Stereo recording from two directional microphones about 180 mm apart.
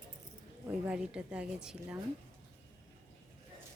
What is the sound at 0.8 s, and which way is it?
A woman's voice, 5° right (ahead or behind).